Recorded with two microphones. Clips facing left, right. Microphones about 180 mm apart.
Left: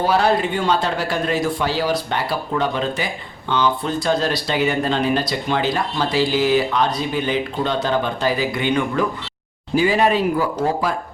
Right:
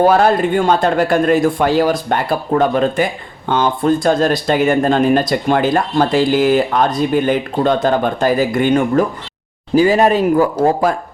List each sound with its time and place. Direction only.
0.0 s speech: 50° right (ahead or behind)